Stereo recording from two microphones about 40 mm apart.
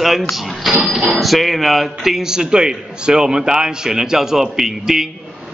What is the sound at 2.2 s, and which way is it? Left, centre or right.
A man's voice, centre.